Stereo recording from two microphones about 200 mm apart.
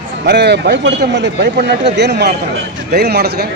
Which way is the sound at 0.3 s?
55° right (ahead or behind).